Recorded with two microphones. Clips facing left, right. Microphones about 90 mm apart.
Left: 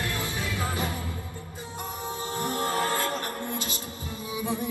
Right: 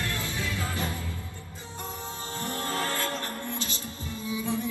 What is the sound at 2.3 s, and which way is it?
Music, 20° left (ahead or behind).